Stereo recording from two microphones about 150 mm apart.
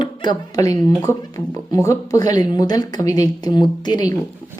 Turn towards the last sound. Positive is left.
turn(degrees=25)  # may be behind; listen again after turning